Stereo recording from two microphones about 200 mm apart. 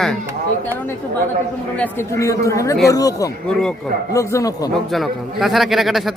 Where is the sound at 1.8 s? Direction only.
15° left (ahead or behind).